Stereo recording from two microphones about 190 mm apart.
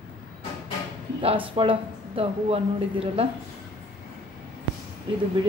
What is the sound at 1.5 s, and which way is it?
Speech, 30° right (ahead or behind).